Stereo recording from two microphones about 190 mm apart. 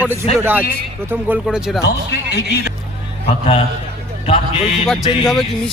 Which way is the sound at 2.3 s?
60° left (ahead or behind).